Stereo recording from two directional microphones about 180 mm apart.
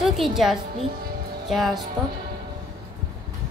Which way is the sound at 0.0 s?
Centre (ahead or behind).